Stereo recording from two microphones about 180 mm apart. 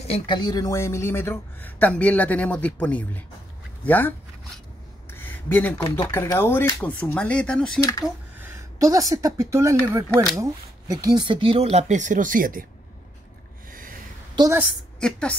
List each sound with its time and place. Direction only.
0.1 s a woman's voice: 25° left (ahead or behind)
5.1 s a sound: 10° left (ahead or behind)
6.0 s a woman's voice: 10° left (ahead or behind)
8.5 s speech: 15° right (ahead or behind); by 12.6 s 50° right (ahead or behind)
13.7 s a sound: 50° right (ahead or behind)
15.0 s a woman's voice: 5° left (ahead or behind)